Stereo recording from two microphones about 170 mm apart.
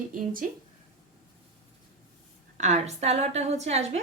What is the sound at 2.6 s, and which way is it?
A woman's voice, 40° right (ahead or behind).